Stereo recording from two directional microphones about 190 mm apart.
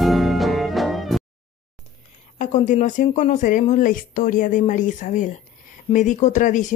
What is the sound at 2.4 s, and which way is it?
A woman's voice, 40° left (ahead or behind).